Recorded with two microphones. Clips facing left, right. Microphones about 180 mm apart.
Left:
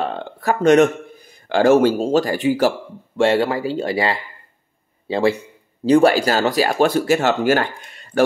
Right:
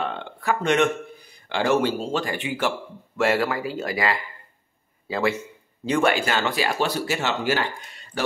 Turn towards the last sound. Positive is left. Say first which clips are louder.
# left 8 dB
turn(degrees=50)  # may be behind; listen again after turning